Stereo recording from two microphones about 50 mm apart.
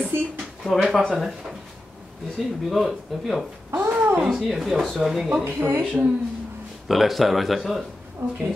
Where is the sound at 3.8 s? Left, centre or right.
Right.